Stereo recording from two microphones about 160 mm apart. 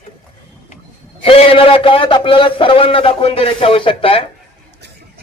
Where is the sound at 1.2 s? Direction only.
35° left (ahead or behind).